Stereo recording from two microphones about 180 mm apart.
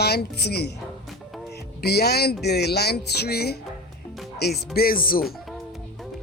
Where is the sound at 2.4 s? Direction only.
65° left (ahead or behind).